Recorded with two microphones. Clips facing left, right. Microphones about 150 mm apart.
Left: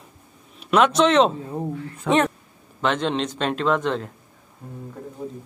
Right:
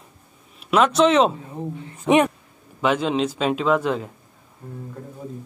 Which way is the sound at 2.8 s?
5° right (ahead or behind).